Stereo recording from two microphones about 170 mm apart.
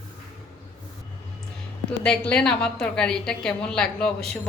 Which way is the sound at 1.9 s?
5° left (ahead or behind).